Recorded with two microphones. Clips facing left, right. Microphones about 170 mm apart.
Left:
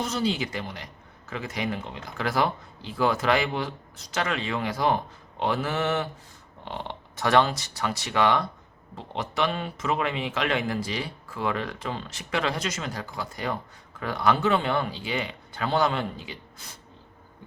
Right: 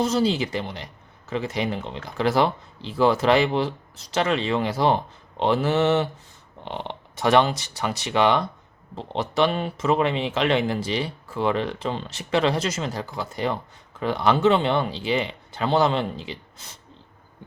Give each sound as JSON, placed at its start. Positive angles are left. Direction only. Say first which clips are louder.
{"t": 0.0, "sound": "speech", "louder": "right 6 dB", "side_deg": -30}